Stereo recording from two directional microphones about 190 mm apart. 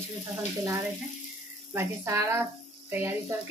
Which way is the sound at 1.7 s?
15° right (ahead or behind).